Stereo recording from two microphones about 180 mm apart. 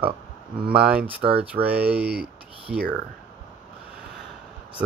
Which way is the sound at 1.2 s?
30° right (ahead or behind).